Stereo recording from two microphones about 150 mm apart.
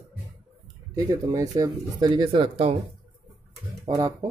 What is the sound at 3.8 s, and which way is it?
Speech, 25° right (ahead or behind).